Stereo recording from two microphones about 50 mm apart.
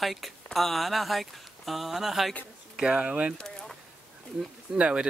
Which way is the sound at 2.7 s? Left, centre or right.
Centre.